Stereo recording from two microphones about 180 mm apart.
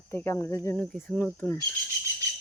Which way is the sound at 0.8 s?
5° left (ahead or behind).